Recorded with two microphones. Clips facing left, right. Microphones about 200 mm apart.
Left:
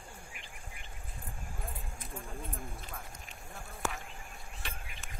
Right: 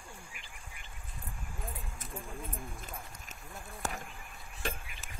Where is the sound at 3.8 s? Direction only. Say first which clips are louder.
Left 1 dB; 40° right (ahead or behind).